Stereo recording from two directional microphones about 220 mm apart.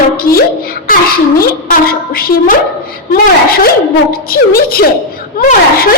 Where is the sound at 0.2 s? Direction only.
40° left (ahead or behind).